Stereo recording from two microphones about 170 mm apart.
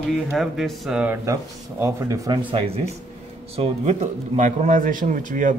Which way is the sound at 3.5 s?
40° right (ahead or behind).